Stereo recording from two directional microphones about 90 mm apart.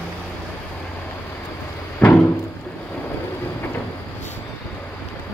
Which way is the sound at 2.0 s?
20° left (ahead or behind).